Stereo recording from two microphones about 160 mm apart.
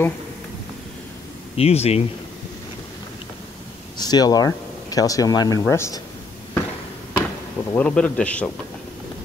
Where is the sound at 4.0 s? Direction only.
25° left (ahead or behind).